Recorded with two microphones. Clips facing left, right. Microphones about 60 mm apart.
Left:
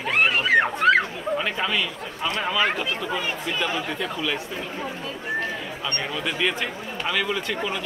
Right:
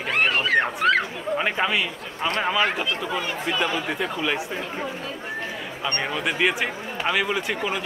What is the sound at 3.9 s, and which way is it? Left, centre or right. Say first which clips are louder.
Speech: right 2 dB; centre.